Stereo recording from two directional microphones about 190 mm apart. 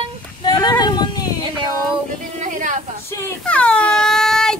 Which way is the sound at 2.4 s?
40° right (ahead or behind).